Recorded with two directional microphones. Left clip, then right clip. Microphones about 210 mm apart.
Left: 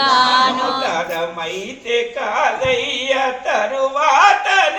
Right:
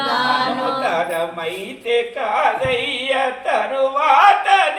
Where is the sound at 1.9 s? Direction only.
5° left (ahead or behind).